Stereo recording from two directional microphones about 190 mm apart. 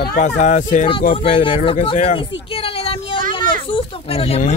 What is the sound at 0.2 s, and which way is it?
Speech, 40° left (ahead or behind).